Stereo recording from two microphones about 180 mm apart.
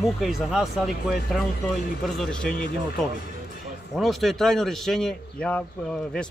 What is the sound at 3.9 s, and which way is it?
Speech, centre (ahead or behind).